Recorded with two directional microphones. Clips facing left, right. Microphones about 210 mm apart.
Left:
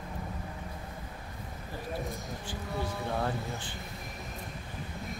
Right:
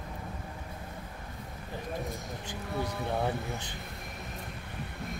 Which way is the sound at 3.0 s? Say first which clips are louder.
Right 1 dB; 15° right (ahead or behind).